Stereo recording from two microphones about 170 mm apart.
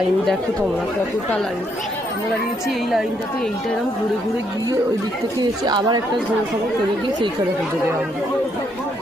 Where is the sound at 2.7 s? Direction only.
Centre (ahead or behind).